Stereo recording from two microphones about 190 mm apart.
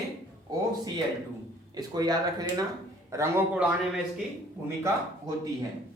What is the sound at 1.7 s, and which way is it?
Speech, 20° right (ahead or behind).